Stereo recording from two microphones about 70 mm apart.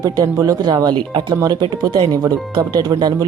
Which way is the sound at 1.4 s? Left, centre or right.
Right.